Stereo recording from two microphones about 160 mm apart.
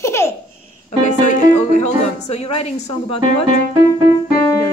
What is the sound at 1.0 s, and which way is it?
A woman's voice, 50° left (ahead or behind).